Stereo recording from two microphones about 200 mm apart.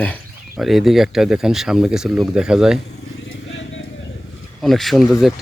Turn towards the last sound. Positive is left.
turn(degrees=0)  # may be behind; listen again after turning